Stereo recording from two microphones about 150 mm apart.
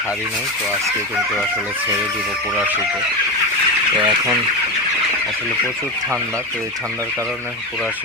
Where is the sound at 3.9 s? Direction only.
35° right (ahead or behind).